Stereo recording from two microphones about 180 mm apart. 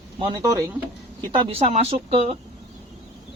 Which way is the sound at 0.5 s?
15° right (ahead or behind).